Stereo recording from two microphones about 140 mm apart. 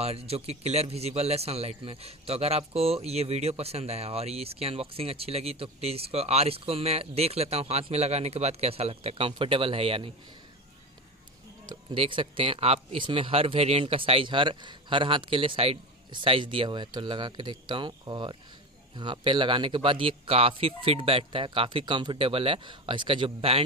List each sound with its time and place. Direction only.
0.0 s a man's voice: 45° right (ahead or behind)
11.6 s speech: 35° right (ahead or behind)